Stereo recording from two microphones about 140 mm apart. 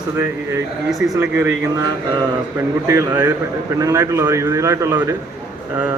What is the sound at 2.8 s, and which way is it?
A man's voice, 20° right (ahead or behind).